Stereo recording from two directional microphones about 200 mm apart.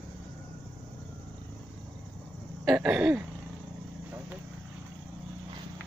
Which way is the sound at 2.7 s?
5° right (ahead or behind).